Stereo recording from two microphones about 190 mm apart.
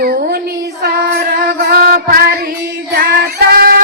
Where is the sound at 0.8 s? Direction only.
55° right (ahead or behind).